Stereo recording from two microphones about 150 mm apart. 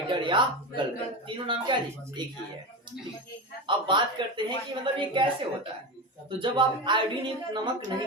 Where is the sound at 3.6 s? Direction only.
30° right (ahead or behind).